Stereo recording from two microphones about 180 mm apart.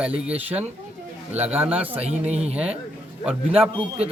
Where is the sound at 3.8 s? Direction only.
35° right (ahead or behind).